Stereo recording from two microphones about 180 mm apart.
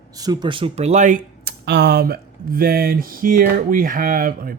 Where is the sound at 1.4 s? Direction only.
65° right (ahead or behind).